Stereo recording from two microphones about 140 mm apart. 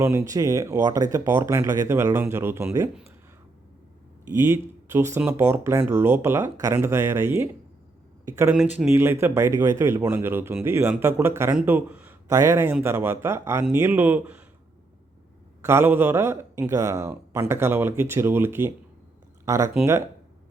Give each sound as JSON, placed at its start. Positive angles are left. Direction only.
{"t": 0.0, "sound": "speech", "side_deg": -20}
{"t": 4.3, "sound": "a man's voice", "side_deg": -20}
{"t": 15.6, "sound": "a man's voice", "side_deg": -15}